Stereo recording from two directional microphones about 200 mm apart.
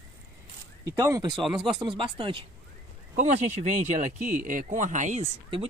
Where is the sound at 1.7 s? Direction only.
25° right (ahead or behind).